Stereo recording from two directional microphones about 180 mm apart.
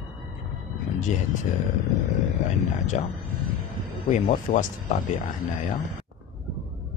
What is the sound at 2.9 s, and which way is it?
Speech, 40° left (ahead or behind).